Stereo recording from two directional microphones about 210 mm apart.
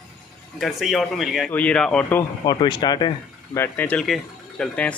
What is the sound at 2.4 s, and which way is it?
Speech, 20° left (ahead or behind).